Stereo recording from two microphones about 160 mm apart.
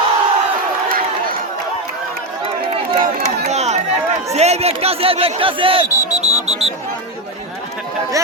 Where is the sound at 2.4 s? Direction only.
35° right (ahead or behind).